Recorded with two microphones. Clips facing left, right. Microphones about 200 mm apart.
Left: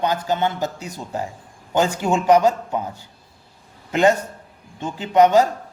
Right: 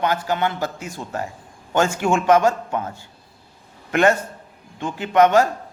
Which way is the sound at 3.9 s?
15° left (ahead or behind).